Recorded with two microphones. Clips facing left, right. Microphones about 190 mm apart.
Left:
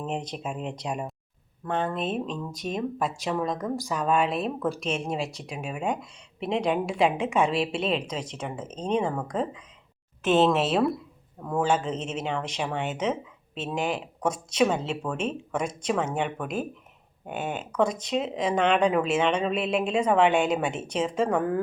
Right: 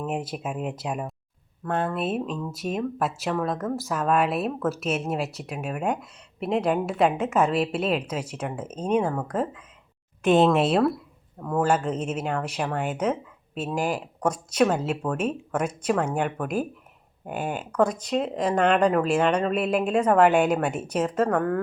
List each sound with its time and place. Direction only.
0.0 s speech: 5° right (ahead or behind)
11.4 s speech: 5° right (ahead or behind)
18.1 s speech: 5° left (ahead or behind)
21.2 s speech: 5° left (ahead or behind)